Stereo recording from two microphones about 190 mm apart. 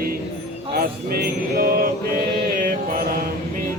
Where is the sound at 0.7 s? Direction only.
50° right (ahead or behind).